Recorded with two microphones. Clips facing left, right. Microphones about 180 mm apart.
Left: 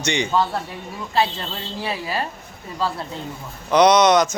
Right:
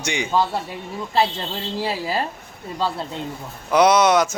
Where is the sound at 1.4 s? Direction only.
30° right (ahead or behind).